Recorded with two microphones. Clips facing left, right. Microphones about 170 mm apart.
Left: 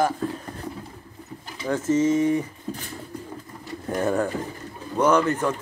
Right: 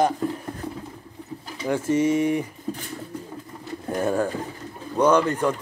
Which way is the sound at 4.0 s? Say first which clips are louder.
Even; 10° right (ahead or behind).